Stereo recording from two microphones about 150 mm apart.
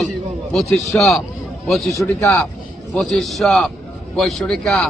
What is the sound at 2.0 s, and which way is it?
A man's voice, 10° left (ahead or behind).